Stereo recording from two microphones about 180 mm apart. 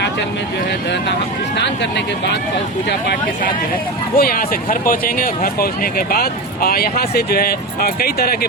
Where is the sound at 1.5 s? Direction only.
75° left (ahead or behind).